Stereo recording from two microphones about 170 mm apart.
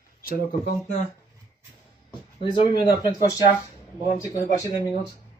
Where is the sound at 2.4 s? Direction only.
25° left (ahead or behind).